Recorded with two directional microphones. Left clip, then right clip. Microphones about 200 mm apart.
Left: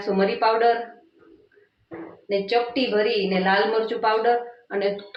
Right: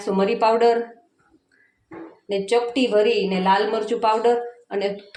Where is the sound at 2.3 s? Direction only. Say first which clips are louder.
Right 1 dB; 30° right (ahead or behind).